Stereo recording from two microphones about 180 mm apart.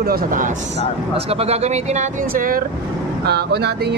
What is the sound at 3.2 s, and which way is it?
Speech, 65° right (ahead or behind).